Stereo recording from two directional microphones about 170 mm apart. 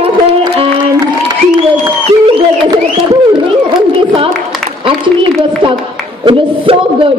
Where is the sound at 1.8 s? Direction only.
30° right (ahead or behind).